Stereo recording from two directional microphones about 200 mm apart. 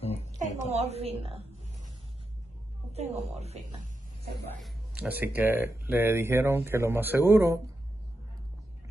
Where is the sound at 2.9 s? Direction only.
30° right (ahead or behind).